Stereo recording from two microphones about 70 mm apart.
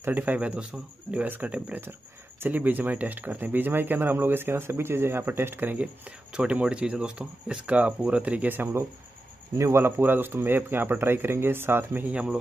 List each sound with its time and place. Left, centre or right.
0.0 s speech: right
9.6 s a man's voice: right